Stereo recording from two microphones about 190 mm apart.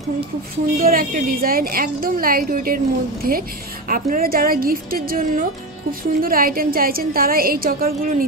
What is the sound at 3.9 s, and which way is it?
A woman's voice, 50° right (ahead or behind).